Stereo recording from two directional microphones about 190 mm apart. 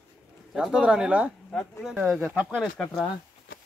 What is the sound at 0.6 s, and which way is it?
Speech, 5° right (ahead or behind).